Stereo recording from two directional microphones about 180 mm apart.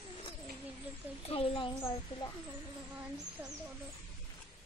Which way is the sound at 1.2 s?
30° left (ahead or behind).